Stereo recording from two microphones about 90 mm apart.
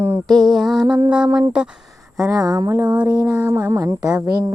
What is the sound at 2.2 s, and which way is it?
Mantra, 40° right (ahead or behind).